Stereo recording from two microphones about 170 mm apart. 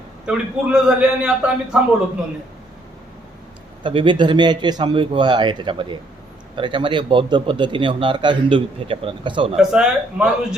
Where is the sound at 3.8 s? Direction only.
30° right (ahead or behind).